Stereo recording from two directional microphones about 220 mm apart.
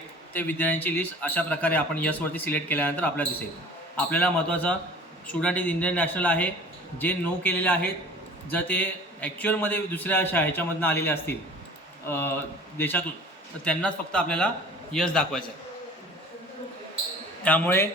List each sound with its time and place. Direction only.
0.3 s a man's voice: 10° left (ahead or behind)
17.4 s a man's voice: 5° left (ahead or behind)